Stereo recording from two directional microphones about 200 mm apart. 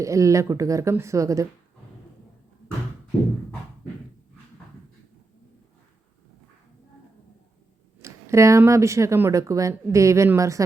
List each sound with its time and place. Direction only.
0.0 s speech: 15° right (ahead or behind)
8.0 s speech: 15° right (ahead or behind)